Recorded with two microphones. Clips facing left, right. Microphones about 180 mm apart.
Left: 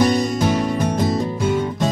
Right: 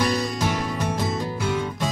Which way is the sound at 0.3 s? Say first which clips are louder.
Left 7 dB; 25° left (ahead or behind).